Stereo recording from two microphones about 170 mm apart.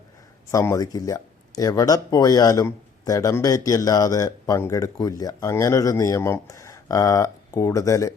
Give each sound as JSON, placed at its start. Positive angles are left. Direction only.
{"t": 0.5, "sound": "speech", "side_deg": 15}